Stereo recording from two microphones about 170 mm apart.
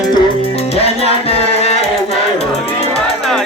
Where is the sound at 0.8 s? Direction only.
35° left (ahead or behind).